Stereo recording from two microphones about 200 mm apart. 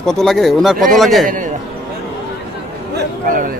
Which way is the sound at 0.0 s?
Centre (ahead or behind).